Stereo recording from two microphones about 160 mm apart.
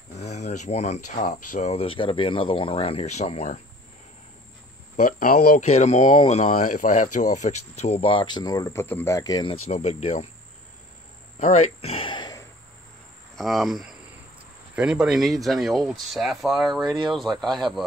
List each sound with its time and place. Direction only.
0.2 s speech: 45° left (ahead or behind)
4.9 s speech: 55° left (ahead or behind)
5.6 s speech: 45° left (ahead or behind); by 9.6 s 25° left (ahead or behind)
9.7 s speech: 45° left (ahead or behind)
11.3 s speech: 45° left (ahead or behind); by 12.4 s 25° left (ahead or behind)
13.4 s speech: centre (ahead or behind)